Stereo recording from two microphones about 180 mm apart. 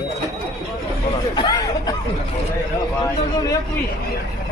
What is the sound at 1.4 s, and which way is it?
Hubbub, 20° left (ahead or behind).